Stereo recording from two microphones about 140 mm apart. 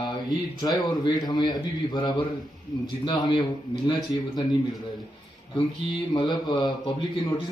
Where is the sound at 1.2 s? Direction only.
30° left (ahead or behind).